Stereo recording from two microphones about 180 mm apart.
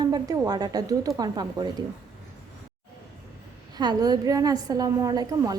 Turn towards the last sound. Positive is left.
turn(degrees=-20)  # may be behind; listen again after turning